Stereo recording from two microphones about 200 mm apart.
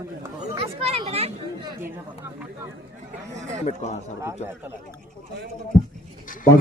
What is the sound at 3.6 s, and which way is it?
Speech, 35° left (ahead or behind).